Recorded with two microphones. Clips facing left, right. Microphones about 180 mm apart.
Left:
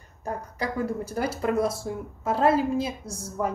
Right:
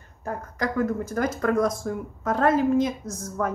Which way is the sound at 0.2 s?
10° left (ahead or behind).